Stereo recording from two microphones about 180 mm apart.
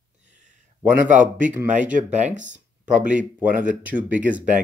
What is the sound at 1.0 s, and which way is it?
Speech, 45° right (ahead or behind).